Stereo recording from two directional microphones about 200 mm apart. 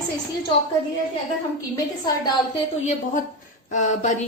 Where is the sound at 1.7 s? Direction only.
20° left (ahead or behind).